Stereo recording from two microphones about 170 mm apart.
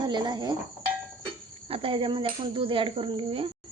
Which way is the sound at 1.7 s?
30° right (ahead or behind).